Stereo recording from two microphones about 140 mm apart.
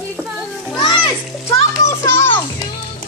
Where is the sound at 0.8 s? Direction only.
35° left (ahead or behind).